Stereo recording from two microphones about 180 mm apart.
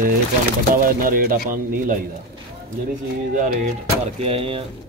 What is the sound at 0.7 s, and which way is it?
Speech, 50° right (ahead or behind).